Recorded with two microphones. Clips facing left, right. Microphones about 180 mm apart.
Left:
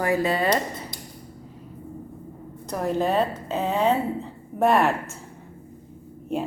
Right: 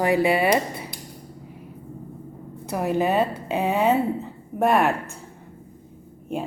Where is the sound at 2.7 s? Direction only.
10° right (ahead or behind).